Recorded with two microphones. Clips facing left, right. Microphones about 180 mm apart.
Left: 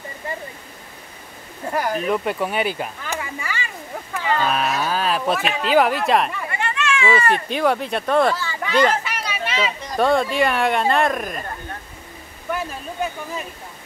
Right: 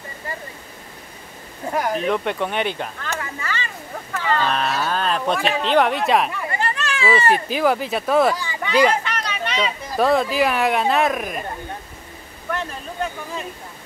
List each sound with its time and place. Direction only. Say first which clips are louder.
1.7 s speech: even; centre (ahead or behind)
6.5 s chatter: left 1 dB; 35° right (ahead or behind)
7.1 s speech: right 3 dB; centre (ahead or behind)
9.0 s speech: right 1 dB; 5° left (ahead or behind)
12.4 s speech: left 1 dB; 5° left (ahead or behind)